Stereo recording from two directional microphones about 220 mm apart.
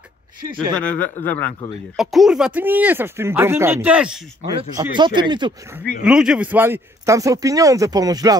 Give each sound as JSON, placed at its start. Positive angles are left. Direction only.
{"t": 0.7, "sound": "a man's voice", "side_deg": 5}
{"t": 4.7, "sound": "speech", "side_deg": -20}
{"t": 6.0, "sound": "a man's voice", "side_deg": -5}